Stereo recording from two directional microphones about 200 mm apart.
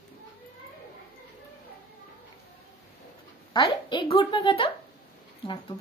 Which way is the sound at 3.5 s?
20° left (ahead or behind).